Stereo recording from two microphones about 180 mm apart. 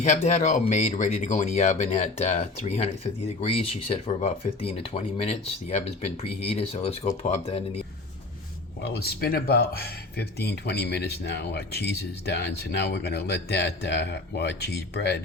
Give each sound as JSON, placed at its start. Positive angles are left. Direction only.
{"t": 0.0, "sound": "speech", "side_deg": 40}
{"t": 8.8, "sound": "speech", "side_deg": 60}